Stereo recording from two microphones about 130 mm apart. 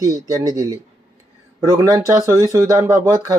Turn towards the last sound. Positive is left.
turn(degrees=-25)  # may be behind; listen again after turning